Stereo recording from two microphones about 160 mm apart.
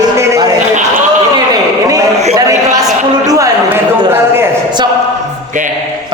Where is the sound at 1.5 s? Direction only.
20° right (ahead or behind).